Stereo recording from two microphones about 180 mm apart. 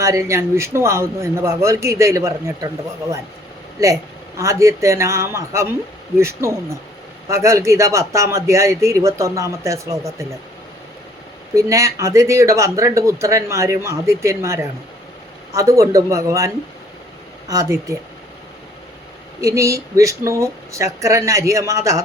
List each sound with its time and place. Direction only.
0.0 s speech: 15° right (ahead or behind)
3.8 s speech: 15° right (ahead or behind)
11.5 s speech: 15° right (ahead or behind)
17.5 s speech: 20° right (ahead or behind)
19.4 s speech: 15° right (ahead or behind)